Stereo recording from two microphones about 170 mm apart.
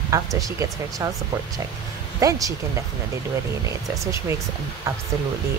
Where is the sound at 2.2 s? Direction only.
20° right (ahead or behind).